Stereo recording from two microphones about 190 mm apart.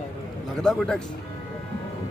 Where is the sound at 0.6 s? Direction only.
5° left (ahead or behind).